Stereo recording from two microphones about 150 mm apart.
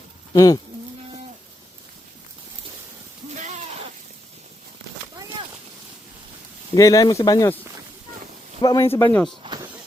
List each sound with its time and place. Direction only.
0.3 s speech: 25° left (ahead or behind)
3.3 s a sound: 50° right (ahead or behind)
6.7 s speech: 20° left (ahead or behind)
8.6 s speech: 25° left (ahead or behind)
8.9 s speech: 15° left (ahead or behind)
9.4 s a sound: 30° right (ahead or behind)